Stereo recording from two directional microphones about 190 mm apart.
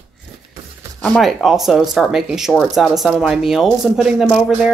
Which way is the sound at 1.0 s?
Centre (ahead or behind).